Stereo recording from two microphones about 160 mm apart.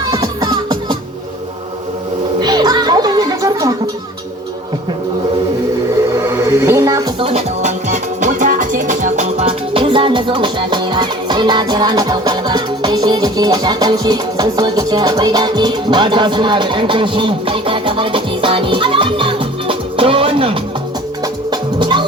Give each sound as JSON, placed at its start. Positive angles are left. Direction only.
{"t": 0.1, "sound": "music", "side_deg": -25}
{"t": 2.4, "sound": "music", "side_deg": -25}
{"t": 6.2, "sound": "music", "side_deg": -15}
{"t": 7.2, "sound": "music", "side_deg": -40}